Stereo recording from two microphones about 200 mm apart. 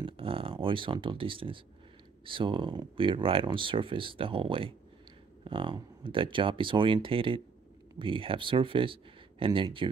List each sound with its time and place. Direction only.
0.0 s speech: 25° right (ahead or behind)